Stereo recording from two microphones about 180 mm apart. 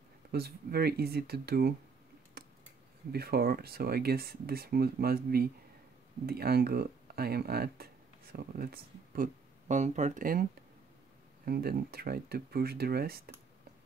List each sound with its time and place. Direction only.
0.3 s speech: 60° right (ahead or behind)
2.4 s computer keyboard: 55° right (ahead or behind)
3.1 s speech: 60° right (ahead or behind)
11.4 s speech: 55° right (ahead or behind)